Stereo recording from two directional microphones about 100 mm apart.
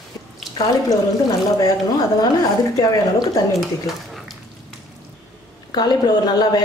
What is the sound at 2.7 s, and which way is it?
Speech, 35° left (ahead or behind).